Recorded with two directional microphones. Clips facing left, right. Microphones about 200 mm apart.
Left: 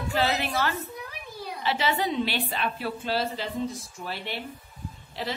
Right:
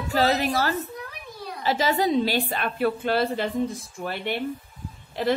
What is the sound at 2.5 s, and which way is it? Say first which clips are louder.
A woman's voice: right 6 dB; 55° right (ahead or behind).